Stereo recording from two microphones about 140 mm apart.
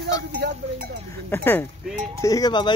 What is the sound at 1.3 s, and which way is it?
Speech, 15° left (ahead or behind).